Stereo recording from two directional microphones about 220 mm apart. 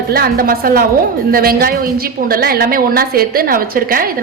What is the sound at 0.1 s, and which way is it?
A woman's voice, 40° right (ahead or behind).